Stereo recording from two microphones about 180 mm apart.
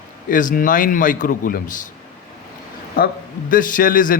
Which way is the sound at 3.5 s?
50° left (ahead or behind).